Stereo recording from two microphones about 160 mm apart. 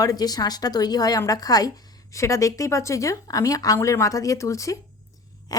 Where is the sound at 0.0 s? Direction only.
25° left (ahead or behind).